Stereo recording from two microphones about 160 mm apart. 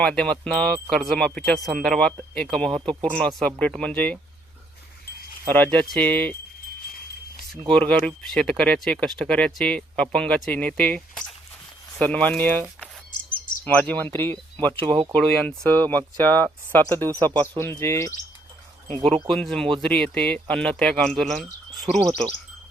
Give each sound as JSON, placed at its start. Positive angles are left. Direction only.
{"t": 0.0, "sound": "speech", "side_deg": 5}
{"t": 5.5, "sound": "speech", "side_deg": 10}
{"t": 7.7, "sound": "speech", "side_deg": 5}
{"t": 13.7, "sound": "speech", "side_deg": 10}
{"t": 14.7, "sound": "speech", "side_deg": -35}
{"t": 15.1, "sound": "speech", "side_deg": 10}
{"t": 19.3, "sound": "speech", "side_deg": 5}